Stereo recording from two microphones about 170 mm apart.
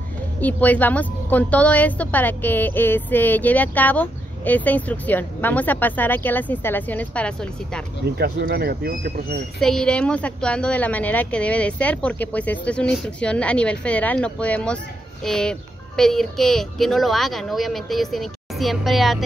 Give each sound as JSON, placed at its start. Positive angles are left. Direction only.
{"t": 0.4, "sound": "a woman's voice", "side_deg": 10}
{"t": 8.0, "sound": "speech", "side_deg": -70}
{"t": 9.6, "sound": "a woman's voice", "side_deg": 5}